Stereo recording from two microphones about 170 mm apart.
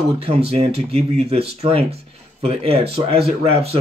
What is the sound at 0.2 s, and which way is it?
Speech, 35° right (ahead or behind).